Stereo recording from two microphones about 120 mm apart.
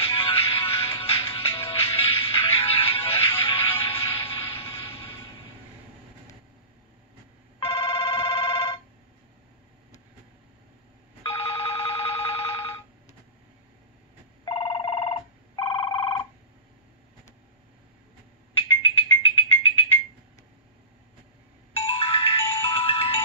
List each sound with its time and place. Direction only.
0.0 s music: 50° left (ahead or behind)
4.3 s a sound: 50° left (ahead or behind)
7.6 s telephone bell ringing: 45° left (ahead or behind)
11.2 s telephone: 50° left (ahead or behind)
14.4 s telephone bell ringing: 45° left (ahead or behind)
18.7 s music: 45° left (ahead or behind)
21.8 s music: 50° left (ahead or behind)